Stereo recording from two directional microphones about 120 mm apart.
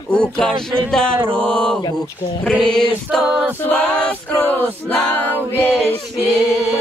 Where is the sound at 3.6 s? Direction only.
10° left (ahead or behind).